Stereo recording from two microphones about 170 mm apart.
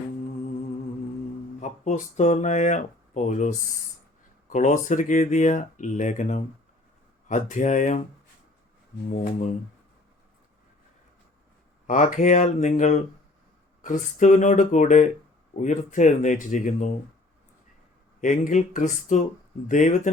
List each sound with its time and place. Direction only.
1.5 s speech: 45° left (ahead or behind)
11.9 s speech: 50° left (ahead or behind)
18.2 s speech: 45° left (ahead or behind)